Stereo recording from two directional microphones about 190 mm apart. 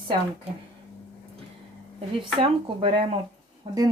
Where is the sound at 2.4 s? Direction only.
25° right (ahead or behind).